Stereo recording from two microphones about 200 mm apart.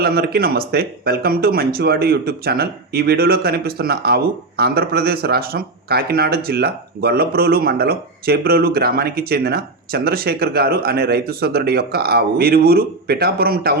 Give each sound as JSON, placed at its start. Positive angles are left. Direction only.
{"t": 0.0, "sound": "speech", "side_deg": -50}